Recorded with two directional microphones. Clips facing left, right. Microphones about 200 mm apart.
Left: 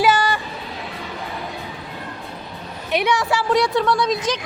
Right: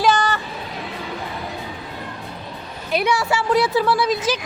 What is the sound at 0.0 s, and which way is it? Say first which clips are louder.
Music: left 1 dB; 10° left (ahead or behind).